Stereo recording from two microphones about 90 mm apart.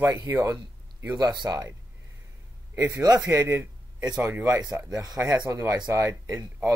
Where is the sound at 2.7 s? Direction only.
35° right (ahead or behind).